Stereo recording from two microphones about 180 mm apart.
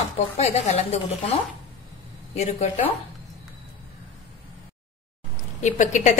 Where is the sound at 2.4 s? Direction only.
40° left (ahead or behind).